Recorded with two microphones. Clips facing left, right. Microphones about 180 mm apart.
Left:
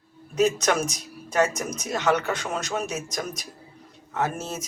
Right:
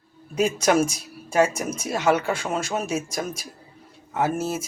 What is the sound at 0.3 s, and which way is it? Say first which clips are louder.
Speech: right 2 dB; 10° right (ahead or behind).